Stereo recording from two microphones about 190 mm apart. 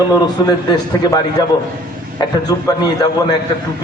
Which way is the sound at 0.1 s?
20° left (ahead or behind).